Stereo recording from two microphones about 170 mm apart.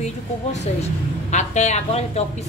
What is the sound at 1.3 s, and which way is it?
Speech, 45° left (ahead or behind).